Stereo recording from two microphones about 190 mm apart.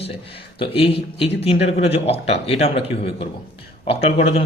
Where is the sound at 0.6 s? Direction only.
30° left (ahead or behind).